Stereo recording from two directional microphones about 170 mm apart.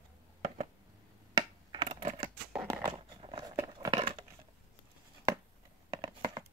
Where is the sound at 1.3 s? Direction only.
25° right (ahead or behind).